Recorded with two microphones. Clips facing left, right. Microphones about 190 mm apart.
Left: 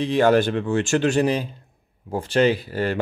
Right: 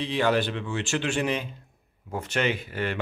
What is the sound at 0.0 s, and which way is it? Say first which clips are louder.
Speech: left 7 dB; 45° left (ahead or behind).